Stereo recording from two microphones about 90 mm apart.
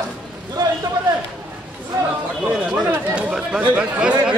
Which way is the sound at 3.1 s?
10° right (ahead or behind).